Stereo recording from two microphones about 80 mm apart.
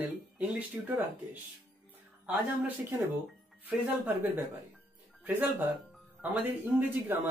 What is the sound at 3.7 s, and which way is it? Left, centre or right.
Speech, right.